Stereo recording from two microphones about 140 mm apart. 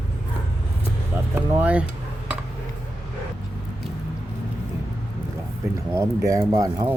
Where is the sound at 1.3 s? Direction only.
10° right (ahead or behind).